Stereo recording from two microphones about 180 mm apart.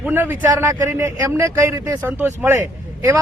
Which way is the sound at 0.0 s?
10° right (ahead or behind).